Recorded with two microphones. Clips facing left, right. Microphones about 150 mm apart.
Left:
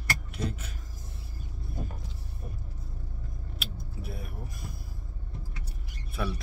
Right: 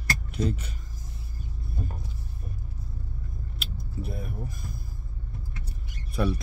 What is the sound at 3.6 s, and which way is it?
Vehicle, 5° left (ahead or behind).